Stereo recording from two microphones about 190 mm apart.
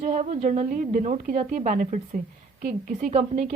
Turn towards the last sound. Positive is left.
turn(degrees=-45)  # may be behind; listen again after turning